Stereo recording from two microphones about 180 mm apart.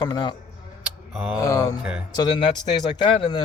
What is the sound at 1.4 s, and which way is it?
Speech, 20° left (ahead or behind).